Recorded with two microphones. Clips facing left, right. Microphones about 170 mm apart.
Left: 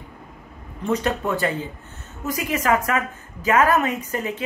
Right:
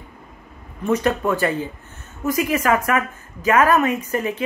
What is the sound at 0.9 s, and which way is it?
Speech, 20° left (ahead or behind).